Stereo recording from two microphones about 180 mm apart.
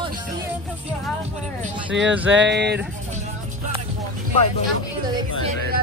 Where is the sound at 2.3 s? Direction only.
80° right.